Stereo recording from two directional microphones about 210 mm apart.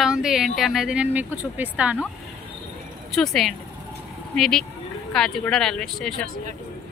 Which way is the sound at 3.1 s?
Centre (ahead or behind).